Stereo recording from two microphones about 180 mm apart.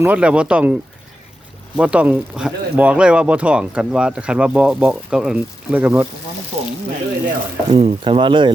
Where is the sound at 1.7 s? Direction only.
5° right (ahead or behind).